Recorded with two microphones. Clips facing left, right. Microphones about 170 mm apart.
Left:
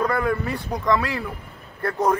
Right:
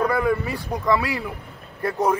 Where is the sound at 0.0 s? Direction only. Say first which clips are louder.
Right 1 dB; 5° right (ahead or behind).